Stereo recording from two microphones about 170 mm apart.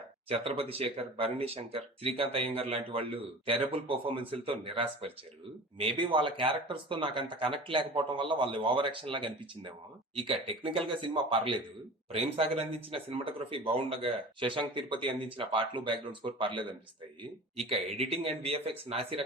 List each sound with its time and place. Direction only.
0.3 s speech: 35° right (ahead or behind)
18.0 s speech: 35° right (ahead or behind)